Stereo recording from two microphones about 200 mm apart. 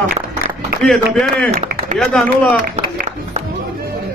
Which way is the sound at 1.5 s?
50° right (ahead or behind).